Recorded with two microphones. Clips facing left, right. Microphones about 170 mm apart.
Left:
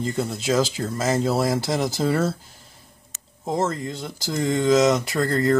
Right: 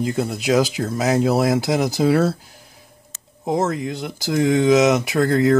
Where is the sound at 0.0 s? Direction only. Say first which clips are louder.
Right 3 dB; 5° right (ahead or behind).